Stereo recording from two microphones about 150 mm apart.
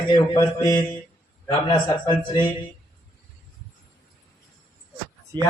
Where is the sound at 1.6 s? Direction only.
30° left (ahead or behind).